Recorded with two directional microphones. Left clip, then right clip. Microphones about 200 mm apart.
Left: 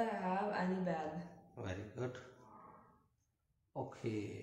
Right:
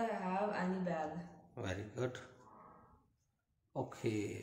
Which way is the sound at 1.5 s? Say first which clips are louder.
Right 3 dB; 45° right (ahead or behind).